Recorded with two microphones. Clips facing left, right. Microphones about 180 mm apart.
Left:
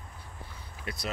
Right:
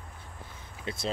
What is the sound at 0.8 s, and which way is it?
Speech, 25° right (ahead or behind).